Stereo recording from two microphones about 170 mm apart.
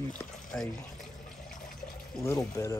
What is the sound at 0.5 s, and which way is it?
Speech, 10° left (ahead or behind).